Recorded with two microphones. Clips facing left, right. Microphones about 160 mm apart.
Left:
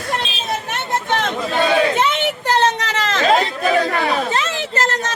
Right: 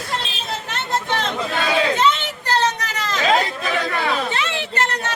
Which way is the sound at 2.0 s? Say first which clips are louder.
Left 1 dB; 60° left (ahead or behind).